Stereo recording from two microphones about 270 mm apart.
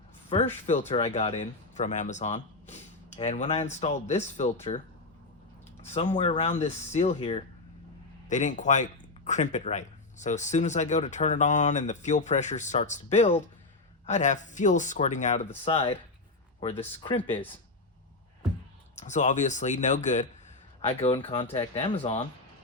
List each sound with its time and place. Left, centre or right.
0.3 s speech: left
5.8 s speech: left
18.9 s speech: left